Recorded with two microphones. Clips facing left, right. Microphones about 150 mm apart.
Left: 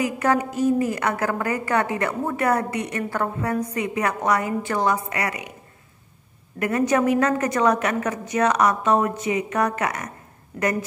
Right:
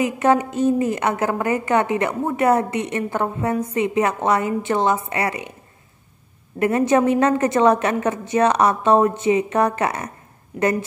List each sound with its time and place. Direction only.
0.0 s a woman's voice: 25° right (ahead or behind)
6.6 s a woman's voice: 25° right (ahead or behind)